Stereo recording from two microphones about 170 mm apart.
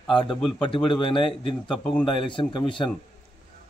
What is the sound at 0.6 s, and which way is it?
Speech, 30° left (ahead or behind).